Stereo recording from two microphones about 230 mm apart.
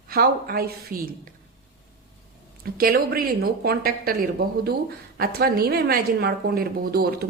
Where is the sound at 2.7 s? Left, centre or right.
Right.